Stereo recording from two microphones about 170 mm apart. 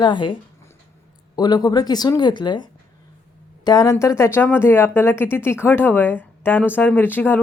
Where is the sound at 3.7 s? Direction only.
20° left (ahead or behind).